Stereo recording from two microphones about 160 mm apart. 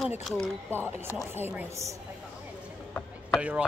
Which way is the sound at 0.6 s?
15° right (ahead or behind).